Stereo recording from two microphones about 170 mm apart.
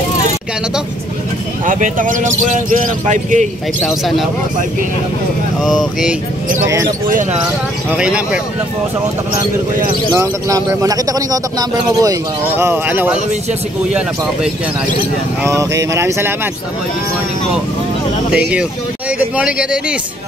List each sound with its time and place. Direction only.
1.7 s a man's voice: 50° right (ahead or behind)
3.8 s speech: centre (ahead or behind)
5.6 s speech: centre (ahead or behind)
8.0 s speech: 5° right (ahead or behind)
10.1 s speech: 20° right (ahead or behind)
15.4 s speech: 20° right (ahead or behind)
18.3 s speech: 5° right (ahead or behind)